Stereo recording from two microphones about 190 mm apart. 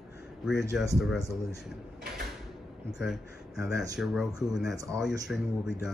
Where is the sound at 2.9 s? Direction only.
Centre (ahead or behind).